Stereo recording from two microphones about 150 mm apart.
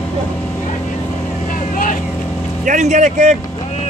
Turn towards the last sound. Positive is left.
turn(degrees=-50)  # may be behind; listen again after turning